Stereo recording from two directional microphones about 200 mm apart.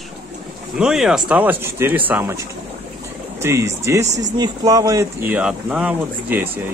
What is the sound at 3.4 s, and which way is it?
Speech, 15° right (ahead or behind).